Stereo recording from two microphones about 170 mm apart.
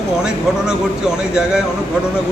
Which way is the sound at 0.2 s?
5° right (ahead or behind).